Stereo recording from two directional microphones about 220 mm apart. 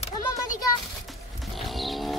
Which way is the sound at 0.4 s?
15° left (ahead or behind).